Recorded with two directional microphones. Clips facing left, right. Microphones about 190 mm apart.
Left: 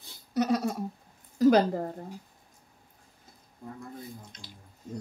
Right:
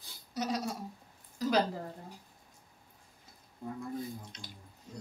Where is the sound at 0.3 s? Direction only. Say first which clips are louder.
Left 8 dB; 60° left (ahead or behind).